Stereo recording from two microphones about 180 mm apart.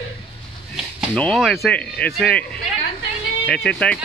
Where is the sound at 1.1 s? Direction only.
Centre (ahead or behind).